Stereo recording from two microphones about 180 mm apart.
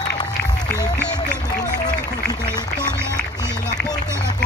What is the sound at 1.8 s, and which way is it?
Run, 20° left (ahead or behind).